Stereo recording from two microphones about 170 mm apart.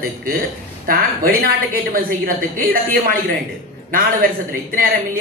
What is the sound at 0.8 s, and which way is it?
A man's voice, 60° right (ahead or behind).